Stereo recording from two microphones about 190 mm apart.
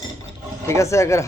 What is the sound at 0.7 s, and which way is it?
Speech, 15° left (ahead or behind).